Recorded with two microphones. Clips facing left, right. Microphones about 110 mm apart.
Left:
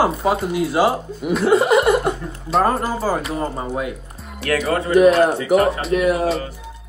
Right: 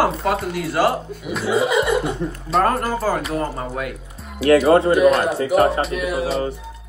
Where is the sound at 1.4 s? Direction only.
60° left (ahead or behind).